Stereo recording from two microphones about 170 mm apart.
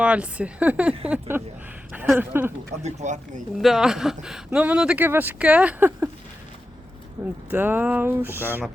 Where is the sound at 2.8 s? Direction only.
45° right (ahead or behind).